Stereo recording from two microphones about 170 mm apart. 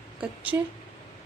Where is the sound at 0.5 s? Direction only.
15° right (ahead or behind).